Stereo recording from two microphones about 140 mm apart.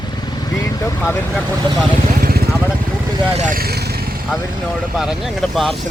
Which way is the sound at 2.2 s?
90° right.